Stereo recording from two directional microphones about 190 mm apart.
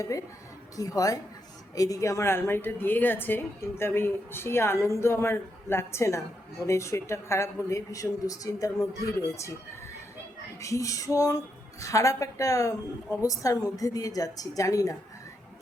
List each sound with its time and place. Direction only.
0.8 s a woman's voice: 20° left (ahead or behind)
10.6 s a woman's voice: 15° left (ahead or behind)